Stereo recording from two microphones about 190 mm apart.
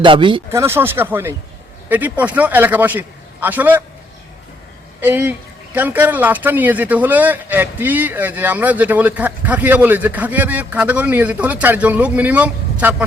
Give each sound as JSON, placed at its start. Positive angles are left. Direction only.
{"t": 0.0, "sound": "speech", "side_deg": -25}
{"t": 0.5, "sound": "speech", "side_deg": -15}
{"t": 4.9, "sound": "speech", "side_deg": -10}